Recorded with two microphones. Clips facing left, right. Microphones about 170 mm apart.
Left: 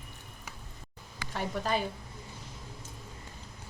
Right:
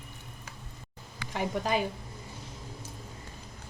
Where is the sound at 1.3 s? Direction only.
15° right (ahead or behind).